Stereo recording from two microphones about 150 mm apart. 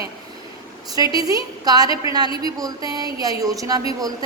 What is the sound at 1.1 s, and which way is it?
A woman's voice, 25° right (ahead or behind).